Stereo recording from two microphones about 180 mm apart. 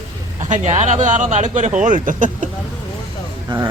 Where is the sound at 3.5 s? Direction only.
25° right (ahead or behind).